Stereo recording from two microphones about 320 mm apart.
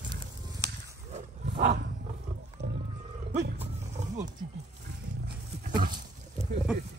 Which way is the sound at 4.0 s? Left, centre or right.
Right.